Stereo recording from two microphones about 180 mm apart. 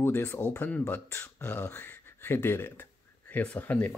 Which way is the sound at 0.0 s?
10° left (ahead or behind).